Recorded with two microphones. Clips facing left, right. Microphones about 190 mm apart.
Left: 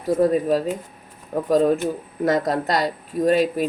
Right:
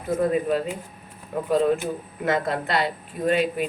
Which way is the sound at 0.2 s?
40° left (ahead or behind).